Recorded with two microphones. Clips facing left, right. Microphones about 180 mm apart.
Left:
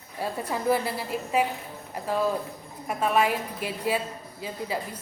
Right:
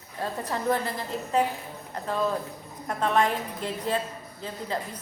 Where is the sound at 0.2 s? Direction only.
10° left (ahead or behind).